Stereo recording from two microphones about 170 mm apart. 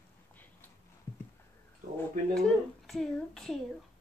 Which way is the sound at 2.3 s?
Centre (ahead or behind).